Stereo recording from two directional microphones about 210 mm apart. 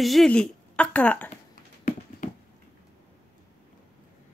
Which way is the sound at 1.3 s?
40° left (ahead or behind).